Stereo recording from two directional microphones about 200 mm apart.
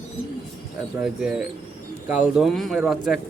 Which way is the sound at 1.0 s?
5° right (ahead or behind).